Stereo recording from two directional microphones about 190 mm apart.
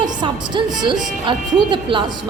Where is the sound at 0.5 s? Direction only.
25° right (ahead or behind).